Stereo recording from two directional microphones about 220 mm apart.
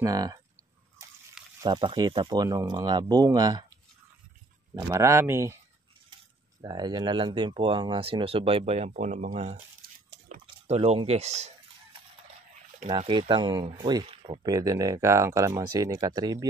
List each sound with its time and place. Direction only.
0.0 s speech: 15° right (ahead or behind)
1.6 s speech: 20° right (ahead or behind)
4.8 s speech: 10° right (ahead or behind)
6.6 s speech: 20° right (ahead or behind)
12.8 s speech: 25° right (ahead or behind)